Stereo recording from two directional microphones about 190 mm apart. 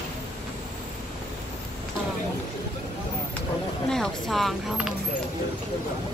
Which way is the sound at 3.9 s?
Centre (ahead or behind).